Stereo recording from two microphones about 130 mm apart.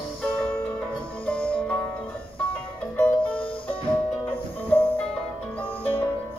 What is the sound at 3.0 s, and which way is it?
Music, 10° left (ahead or behind).